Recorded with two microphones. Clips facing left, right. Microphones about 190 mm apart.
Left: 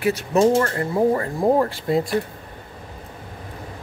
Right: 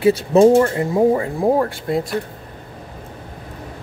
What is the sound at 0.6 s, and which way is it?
Speech, 15° right (ahead or behind).